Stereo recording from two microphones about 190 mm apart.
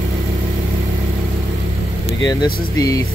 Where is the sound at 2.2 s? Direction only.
20° left (ahead or behind).